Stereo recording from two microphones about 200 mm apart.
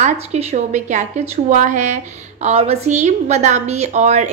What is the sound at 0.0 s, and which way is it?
A woman's voice, 35° right (ahead or behind).